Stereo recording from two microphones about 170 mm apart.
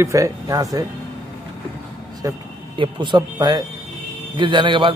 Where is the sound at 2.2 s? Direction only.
20° right (ahead or behind).